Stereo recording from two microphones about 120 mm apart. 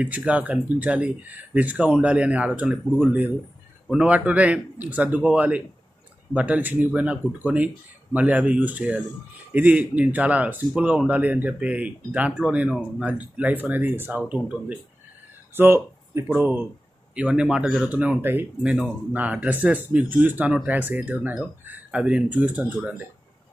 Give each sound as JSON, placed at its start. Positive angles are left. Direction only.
{"t": 0.0, "sound": "speech", "side_deg": -10}
{"t": 15.5, "sound": "speech", "side_deg": -20}